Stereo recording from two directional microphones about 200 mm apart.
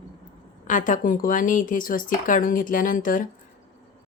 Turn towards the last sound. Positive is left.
turn(degrees=40)  # may be behind; listen again after turning